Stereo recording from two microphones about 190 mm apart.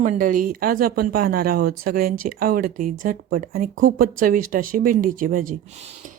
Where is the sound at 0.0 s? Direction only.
45° right (ahead or behind).